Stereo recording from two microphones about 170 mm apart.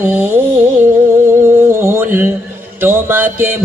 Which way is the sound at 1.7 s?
15° right (ahead or behind).